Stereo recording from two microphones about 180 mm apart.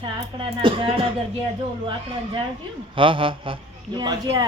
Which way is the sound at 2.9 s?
30° right (ahead or behind).